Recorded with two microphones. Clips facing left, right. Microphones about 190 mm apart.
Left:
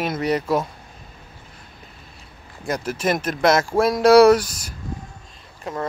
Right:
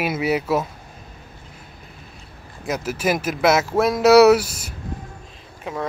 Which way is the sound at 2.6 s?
5° right (ahead or behind).